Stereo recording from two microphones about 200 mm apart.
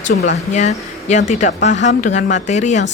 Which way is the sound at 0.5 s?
35° left (ahead or behind).